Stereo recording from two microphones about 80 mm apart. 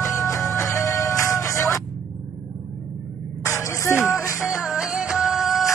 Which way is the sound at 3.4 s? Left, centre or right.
Left.